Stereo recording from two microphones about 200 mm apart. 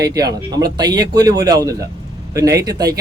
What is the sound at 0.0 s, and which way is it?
Speech, 20° right (ahead or behind).